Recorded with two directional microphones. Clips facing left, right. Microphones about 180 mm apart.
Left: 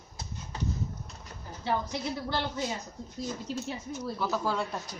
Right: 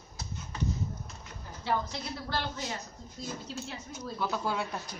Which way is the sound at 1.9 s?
15° left (ahead or behind).